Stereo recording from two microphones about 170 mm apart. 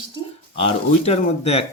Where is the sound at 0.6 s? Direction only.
35° left (ahead or behind).